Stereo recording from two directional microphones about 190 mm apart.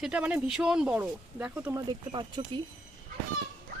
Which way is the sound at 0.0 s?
5° right (ahead or behind).